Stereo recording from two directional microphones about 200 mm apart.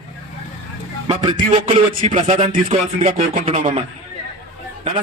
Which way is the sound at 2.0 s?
30° right (ahead or behind).